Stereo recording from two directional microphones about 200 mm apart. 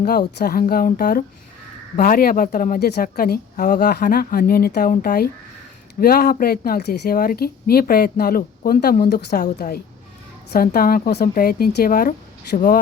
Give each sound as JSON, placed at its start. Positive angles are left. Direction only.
{"t": 0.0, "sound": "a woman's voice", "side_deg": 50}